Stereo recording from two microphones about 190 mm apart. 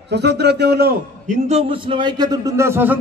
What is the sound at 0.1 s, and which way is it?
A man's voice, 60° right (ahead or behind).